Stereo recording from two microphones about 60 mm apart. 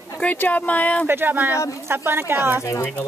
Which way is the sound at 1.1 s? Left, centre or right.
Right.